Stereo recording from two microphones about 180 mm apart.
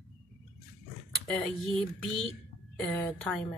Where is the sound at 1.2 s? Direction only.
5° left (ahead or behind).